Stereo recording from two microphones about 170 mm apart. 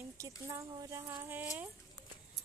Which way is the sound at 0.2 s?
20° right (ahead or behind).